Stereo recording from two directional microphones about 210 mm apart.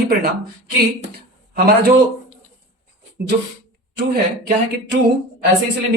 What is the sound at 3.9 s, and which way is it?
Speech, 50° right (ahead or behind).